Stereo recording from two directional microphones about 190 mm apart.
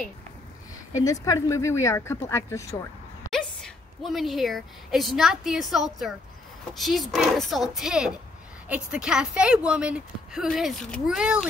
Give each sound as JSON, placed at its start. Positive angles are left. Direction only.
{"t": 0.9, "sound": "speech", "side_deg": 15}
{"t": 3.3, "sound": "a woman's voice", "side_deg": 5}